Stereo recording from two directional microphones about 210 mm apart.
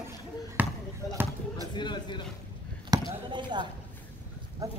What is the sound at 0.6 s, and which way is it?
Basketball bounce, 10° right (ahead or behind).